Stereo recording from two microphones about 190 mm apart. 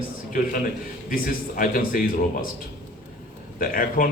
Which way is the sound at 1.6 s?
45° left (ahead or behind).